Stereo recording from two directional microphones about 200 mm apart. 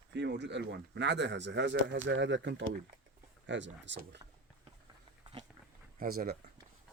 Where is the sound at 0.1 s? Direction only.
60° right (ahead or behind).